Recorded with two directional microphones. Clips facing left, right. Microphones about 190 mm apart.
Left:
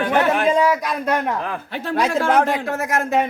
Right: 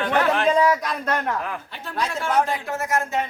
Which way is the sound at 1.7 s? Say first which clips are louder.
Left 10 dB; 80° left.